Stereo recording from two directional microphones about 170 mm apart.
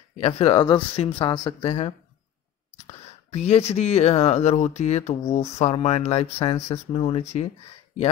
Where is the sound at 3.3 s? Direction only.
40° left (ahead or behind).